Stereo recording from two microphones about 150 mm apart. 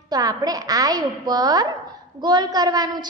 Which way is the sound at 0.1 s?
25° right (ahead or behind).